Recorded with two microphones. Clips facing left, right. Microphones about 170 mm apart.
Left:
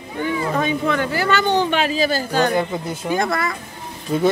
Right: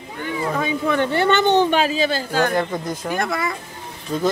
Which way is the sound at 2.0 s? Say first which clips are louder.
Left 1 dB; 5° left (ahead or behind).